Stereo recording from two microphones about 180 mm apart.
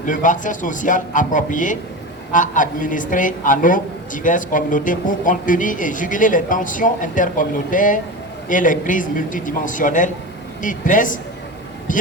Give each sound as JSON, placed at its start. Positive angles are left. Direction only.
{"t": 0.0, "sound": "a woman's voice", "side_deg": 45}